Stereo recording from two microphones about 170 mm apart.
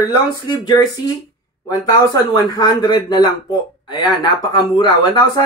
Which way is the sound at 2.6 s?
25° left (ahead or behind).